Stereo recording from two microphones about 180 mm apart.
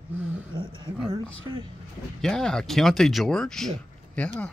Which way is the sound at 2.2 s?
5° left (ahead or behind).